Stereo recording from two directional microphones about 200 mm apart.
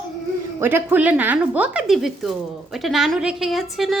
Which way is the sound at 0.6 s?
10° right (ahead or behind).